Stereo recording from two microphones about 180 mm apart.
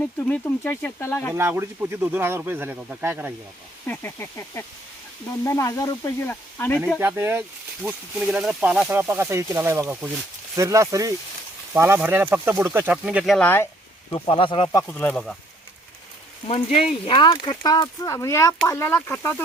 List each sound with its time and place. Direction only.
0.0 s speech: 10° left (ahead or behind)
1.4 s speech: 15° right (ahead or behind)
3.8 s speech: 10° left (ahead or behind)
7.0 s speech: 10° right (ahead or behind); by 13.7 s 10° left (ahead or behind)
14.1 s speech: 30° left (ahead or behind)
14.8 s speech: 10° left (ahead or behind)
16.5 s speech: 35° left (ahead or behind); by 19.3 s 15° left (ahead or behind)